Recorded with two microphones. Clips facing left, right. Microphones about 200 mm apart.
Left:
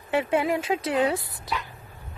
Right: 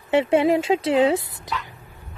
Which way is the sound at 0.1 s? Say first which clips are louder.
Right 6 dB; 25° right (ahead or behind).